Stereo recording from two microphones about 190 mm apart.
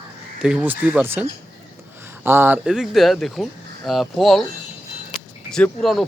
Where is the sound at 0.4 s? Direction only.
5° right (ahead or behind).